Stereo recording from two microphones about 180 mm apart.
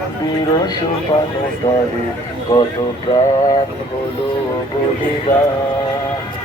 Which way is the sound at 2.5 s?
20° left (ahead or behind).